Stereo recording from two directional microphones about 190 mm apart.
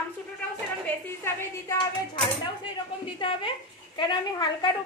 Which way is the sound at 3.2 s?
25° left (ahead or behind).